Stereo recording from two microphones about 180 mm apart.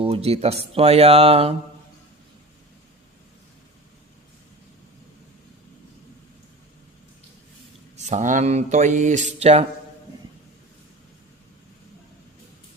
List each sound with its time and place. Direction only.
0.0 s speech: 35° right (ahead or behind)
7.9 s mantra: 40° right (ahead or behind)